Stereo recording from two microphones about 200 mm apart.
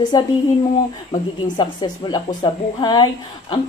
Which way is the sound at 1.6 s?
20° left (ahead or behind).